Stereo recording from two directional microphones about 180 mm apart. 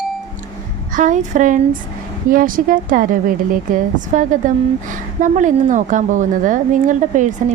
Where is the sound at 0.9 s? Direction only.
45° right (ahead or behind).